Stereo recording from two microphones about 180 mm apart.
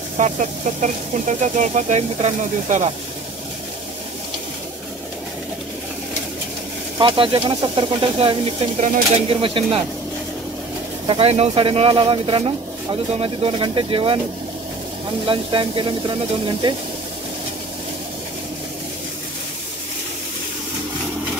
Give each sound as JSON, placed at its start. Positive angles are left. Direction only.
{"t": 0.2, "sound": "speech", "side_deg": -40}
{"t": 7.0, "sound": "speech", "side_deg": -30}
{"t": 11.1, "sound": "speech", "side_deg": -30}
{"t": 15.2, "sound": "speech", "side_deg": -30}